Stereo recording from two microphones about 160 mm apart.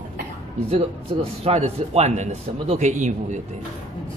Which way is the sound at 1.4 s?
40° right (ahead or behind).